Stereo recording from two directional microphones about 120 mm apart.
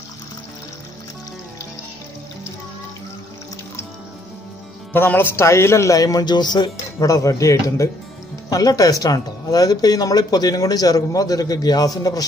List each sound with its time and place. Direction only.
4.9 s a man's voice: 15° left (ahead or behind); by 12.3 s 30° left (ahead or behind)